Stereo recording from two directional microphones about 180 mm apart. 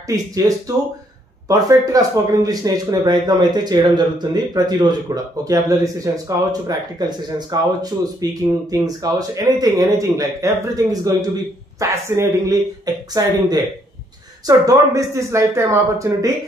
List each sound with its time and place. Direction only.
0.1 s speech: 20° right (ahead or behind)